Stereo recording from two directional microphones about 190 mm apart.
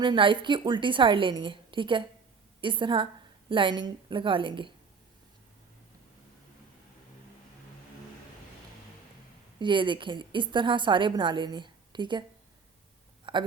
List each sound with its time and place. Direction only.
0.0 s a woman's voice: 25° right (ahead or behind)
9.6 s a woman's voice: 25° right (ahead or behind)
13.3 s a sound: 25° right (ahead or behind)